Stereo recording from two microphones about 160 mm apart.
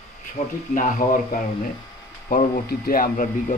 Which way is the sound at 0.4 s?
45° left (ahead or behind).